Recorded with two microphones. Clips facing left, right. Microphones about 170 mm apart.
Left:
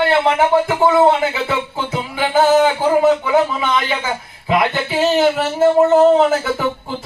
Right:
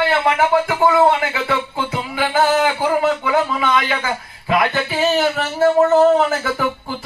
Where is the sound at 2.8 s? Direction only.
20° left (ahead or behind).